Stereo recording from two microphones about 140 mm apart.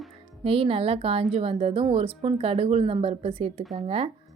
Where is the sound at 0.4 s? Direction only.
40° right (ahead or behind).